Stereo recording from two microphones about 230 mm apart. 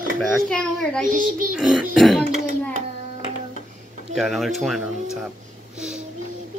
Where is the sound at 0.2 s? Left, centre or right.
Centre.